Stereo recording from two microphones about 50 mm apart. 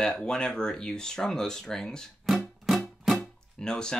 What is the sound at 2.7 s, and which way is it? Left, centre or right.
Music, centre.